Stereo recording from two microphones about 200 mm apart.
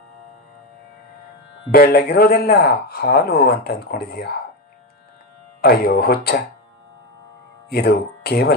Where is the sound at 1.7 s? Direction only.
50° left (ahead or behind).